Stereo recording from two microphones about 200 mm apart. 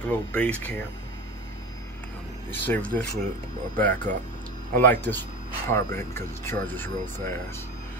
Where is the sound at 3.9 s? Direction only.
40° right (ahead or behind).